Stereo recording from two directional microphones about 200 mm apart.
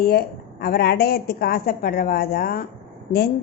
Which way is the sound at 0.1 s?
50° left (ahead or behind).